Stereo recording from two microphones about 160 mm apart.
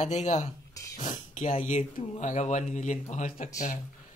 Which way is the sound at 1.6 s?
45° left (ahead or behind).